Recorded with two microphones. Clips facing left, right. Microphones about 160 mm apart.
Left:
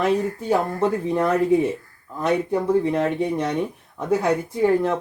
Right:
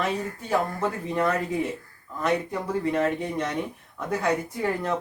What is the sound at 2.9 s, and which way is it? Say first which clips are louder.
Speech: left 4 dB; 15° left (ahead or behind).